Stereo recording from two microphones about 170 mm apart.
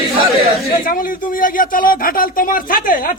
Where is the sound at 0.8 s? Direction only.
55° left (ahead or behind).